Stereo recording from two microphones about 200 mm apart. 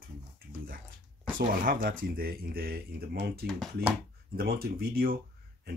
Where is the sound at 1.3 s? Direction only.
45° right (ahead or behind).